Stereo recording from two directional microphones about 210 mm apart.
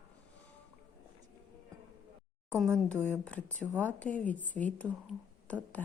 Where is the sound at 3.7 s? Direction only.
10° right (ahead or behind).